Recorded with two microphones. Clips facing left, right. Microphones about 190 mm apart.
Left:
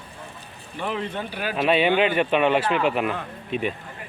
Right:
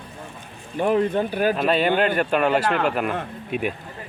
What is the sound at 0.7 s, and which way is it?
Speech, 45° right (ahead or behind).